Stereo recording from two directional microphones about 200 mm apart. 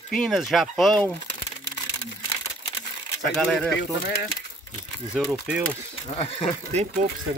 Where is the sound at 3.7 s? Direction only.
50° left (ahead or behind).